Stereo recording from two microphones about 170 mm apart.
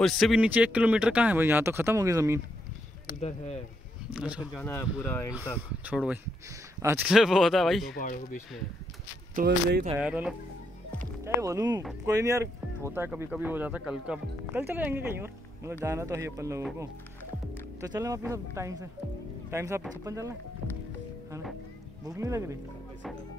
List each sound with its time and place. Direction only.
0.0 s speech: centre (ahead or behind); by 2.4 s 15° right (ahead or behind)
3.2 s speech: 40° left (ahead or behind)
4.1 s speech: 5° right (ahead or behind)
4.6 s speech: 10° left (ahead or behind)
5.9 s speech: 10° right (ahead or behind)
7.1 s speech: 5° right (ahead or behind)
8.0 s speech: 50° left (ahead or behind)
9.4 s speech: 55° right (ahead or behind)
9.9 s speech: 5° right (ahead or behind)
11.2 s speech: 20° right (ahead or behind)
17.7 s speech: 20° right (ahead or behind)
22.0 s speech: 20° right (ahead or behind)